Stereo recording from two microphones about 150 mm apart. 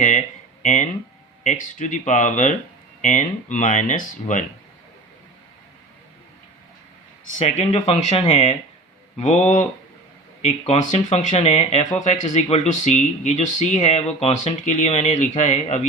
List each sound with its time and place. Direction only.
0.6 s speech: 55° left (ahead or behind)
7.3 s speech: 50° left (ahead or behind)